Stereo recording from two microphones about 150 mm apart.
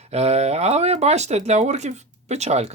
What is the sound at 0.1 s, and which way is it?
Speech, 45° right (ahead or behind).